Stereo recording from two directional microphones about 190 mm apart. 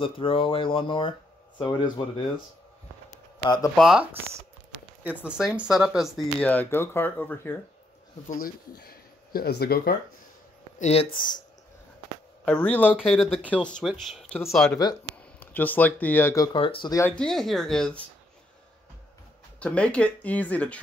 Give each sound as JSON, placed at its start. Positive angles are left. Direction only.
{"t": 0.0, "sound": "speech", "side_deg": 30}
{"t": 3.4, "sound": "speech", "side_deg": 20}
{"t": 3.7, "sound": "speech", "side_deg": -5}
{"t": 8.3, "sound": "speech", "side_deg": 50}
{"t": 10.8, "sound": "speech", "side_deg": 30}
{"t": 12.4, "sound": "speech", "side_deg": 5}
{"t": 16.5, "sound": "speech", "side_deg": 30}
{"t": 17.2, "sound": "speech", "side_deg": 0}
{"t": 19.6, "sound": "speech", "side_deg": 5}